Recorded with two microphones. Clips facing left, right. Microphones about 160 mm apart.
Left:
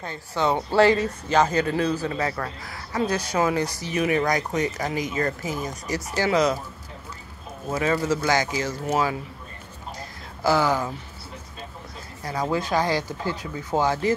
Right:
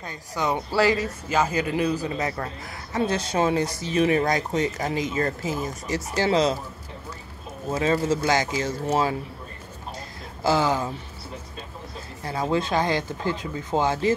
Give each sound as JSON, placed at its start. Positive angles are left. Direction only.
{"t": 0.4, "sound": "speech", "side_deg": 25}
{"t": 1.3, "sound": "a man's voice", "side_deg": -10}
{"t": 7.7, "sound": "a man's voice", "side_deg": -25}
{"t": 10.4, "sound": "a man's voice", "side_deg": -20}
{"t": 12.3, "sound": "a man's voice", "side_deg": -25}